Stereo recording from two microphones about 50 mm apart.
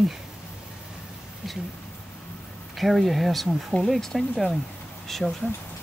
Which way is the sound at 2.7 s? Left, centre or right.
Centre.